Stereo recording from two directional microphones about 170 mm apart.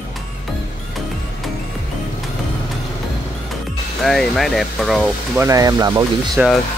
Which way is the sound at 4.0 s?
Centre (ahead or behind).